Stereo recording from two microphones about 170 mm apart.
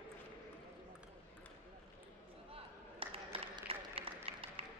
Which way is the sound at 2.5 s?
35° right (ahead or behind).